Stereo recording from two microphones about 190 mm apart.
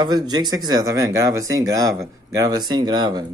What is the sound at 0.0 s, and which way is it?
Speech, 20° right (ahead or behind).